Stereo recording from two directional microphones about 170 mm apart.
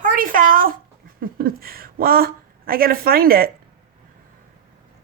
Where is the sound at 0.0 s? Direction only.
55° right (ahead or behind).